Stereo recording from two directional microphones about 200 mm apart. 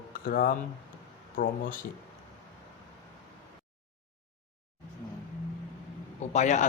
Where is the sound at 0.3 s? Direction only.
45° left (ahead or behind).